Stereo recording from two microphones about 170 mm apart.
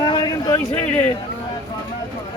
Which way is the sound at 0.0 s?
25° left (ahead or behind).